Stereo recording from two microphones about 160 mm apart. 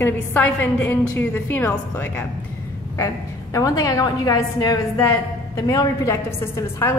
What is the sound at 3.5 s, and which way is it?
A woman's voice, 20° left (ahead or behind).